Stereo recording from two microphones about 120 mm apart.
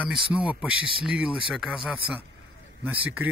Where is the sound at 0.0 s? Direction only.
10° right (ahead or behind).